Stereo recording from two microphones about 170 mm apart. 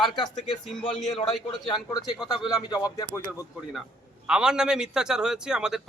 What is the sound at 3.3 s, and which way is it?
A man's voice, centre (ahead or behind).